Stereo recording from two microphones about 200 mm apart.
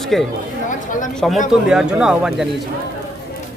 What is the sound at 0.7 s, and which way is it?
Speech, 40° left (ahead or behind).